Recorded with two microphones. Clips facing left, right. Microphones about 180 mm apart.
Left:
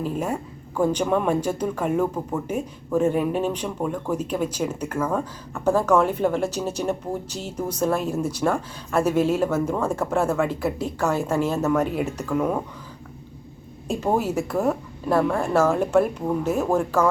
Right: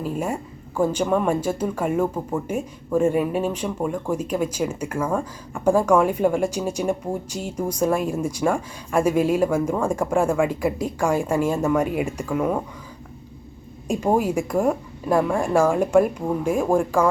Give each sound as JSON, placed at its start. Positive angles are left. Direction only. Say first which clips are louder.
{"t": 0.0, "sound": "speech", "louder": "even", "side_deg": -10}
{"t": 13.8, "sound": "speech", "louder": "right 2 dB", "side_deg": -10}